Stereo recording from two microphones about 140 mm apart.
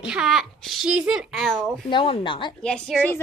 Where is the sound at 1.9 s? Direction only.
40° left (ahead or behind).